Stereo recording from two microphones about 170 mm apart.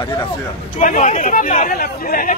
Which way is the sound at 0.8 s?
45° left (ahead or behind).